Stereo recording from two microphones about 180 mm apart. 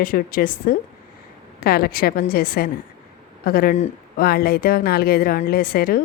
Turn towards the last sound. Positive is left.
turn(degrees=55)  # may be behind; listen again after turning